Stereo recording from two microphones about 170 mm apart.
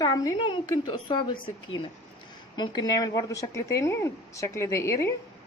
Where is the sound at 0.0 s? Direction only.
25° left (ahead or behind).